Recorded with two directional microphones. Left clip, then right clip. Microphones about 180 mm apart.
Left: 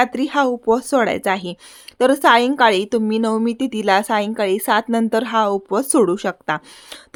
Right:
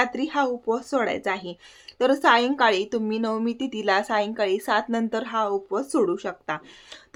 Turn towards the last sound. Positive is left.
turn(degrees=50)  # may be behind; listen again after turning